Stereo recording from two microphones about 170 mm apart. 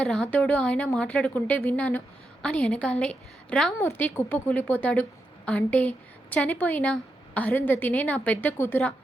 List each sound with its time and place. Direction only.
0.0 s a woman's voice: 5° left (ahead or behind)
3.8 s a woman's voice: 15° left (ahead or behind)